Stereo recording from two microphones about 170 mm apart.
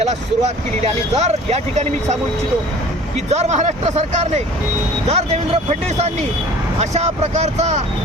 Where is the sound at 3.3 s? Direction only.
40° right (ahead or behind).